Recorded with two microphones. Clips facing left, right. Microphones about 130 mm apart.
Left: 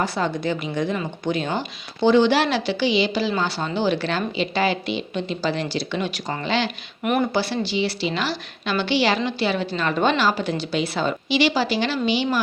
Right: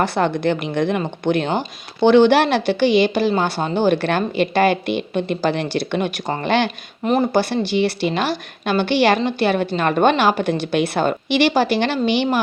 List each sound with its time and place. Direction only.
0.0 s a woman's voice: 60° right (ahead or behind)
7.0 s speech: 30° right (ahead or behind)
7.3 s a woman's voice: 55° right (ahead or behind)